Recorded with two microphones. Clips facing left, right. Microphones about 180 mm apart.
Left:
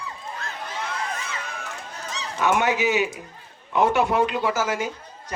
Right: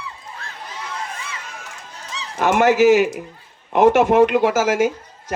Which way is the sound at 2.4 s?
60° right (ahead or behind).